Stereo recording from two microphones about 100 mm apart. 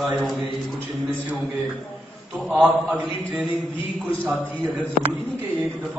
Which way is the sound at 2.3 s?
20° right (ahead or behind).